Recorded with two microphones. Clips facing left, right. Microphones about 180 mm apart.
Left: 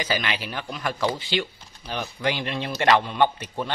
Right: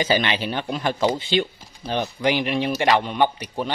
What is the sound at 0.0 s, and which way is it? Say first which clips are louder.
Speech: right 6 dB; 25° right (ahead or behind).